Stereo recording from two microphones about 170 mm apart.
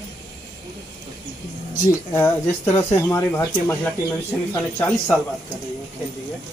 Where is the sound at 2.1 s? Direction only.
15° left (ahead or behind).